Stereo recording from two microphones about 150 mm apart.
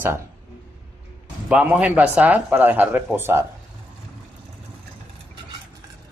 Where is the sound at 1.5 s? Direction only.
10° right (ahead or behind).